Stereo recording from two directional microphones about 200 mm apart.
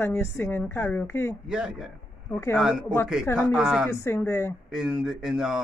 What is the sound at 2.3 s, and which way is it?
Speech, 15° left (ahead or behind).